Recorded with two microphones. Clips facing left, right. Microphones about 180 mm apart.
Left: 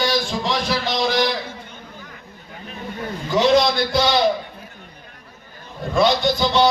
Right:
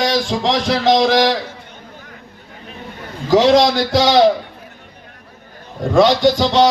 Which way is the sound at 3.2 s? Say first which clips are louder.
Right 5 dB; 90° right.